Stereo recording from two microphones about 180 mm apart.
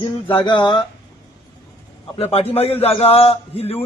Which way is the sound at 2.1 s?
35° left (ahead or behind).